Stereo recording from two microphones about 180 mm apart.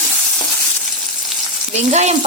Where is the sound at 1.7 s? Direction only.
40° right (ahead or behind).